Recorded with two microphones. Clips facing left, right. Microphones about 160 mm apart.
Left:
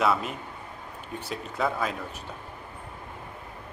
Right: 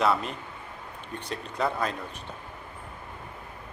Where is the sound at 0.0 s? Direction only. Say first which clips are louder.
Even; 5° left (ahead or behind).